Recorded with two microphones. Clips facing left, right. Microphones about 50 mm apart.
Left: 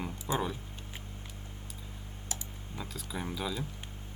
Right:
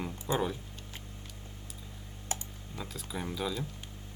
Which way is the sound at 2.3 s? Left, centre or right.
Right.